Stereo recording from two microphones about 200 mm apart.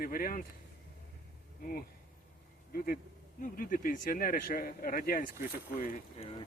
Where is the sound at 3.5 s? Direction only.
40° left (ahead or behind).